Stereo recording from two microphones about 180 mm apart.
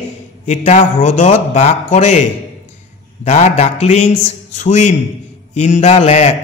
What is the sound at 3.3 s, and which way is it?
A man's voice, 40° left (ahead or behind).